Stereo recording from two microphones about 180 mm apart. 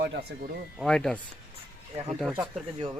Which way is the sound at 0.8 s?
5° left (ahead or behind).